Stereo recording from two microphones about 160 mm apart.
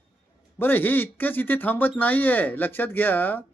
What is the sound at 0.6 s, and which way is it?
Speech, 10° left (ahead or behind).